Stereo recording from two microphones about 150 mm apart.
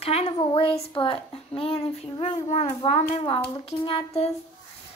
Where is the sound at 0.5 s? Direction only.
40° left (ahead or behind).